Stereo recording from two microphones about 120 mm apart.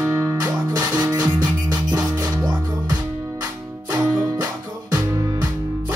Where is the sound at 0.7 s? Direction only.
30° right (ahead or behind).